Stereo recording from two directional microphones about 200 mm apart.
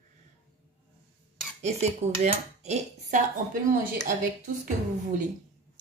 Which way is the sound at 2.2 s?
35° right (ahead or behind).